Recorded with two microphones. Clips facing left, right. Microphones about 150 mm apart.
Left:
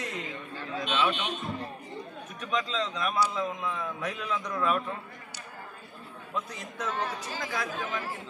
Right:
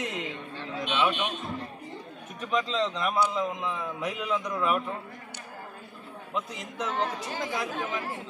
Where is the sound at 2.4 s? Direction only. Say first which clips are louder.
Right 3 dB; 25° right (ahead or behind).